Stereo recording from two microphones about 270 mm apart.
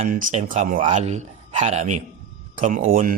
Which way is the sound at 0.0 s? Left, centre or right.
Right.